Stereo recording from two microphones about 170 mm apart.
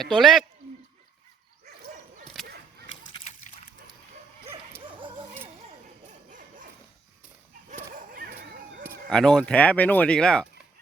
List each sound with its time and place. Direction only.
0.0 s speech: centre (ahead or behind)
2.4 s whip: centre (ahead or behind)
2.9 s slosh: 30° left (ahead or behind)
4.9 s dog: 30° right (ahead or behind)
6.1 s dog: 50° right (ahead or behind)
8.1 s a sound: 60° right (ahead or behind)
9.0 s speech: 5° left (ahead or behind)